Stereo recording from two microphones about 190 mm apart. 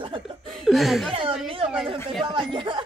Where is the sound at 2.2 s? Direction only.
25° right (ahead or behind).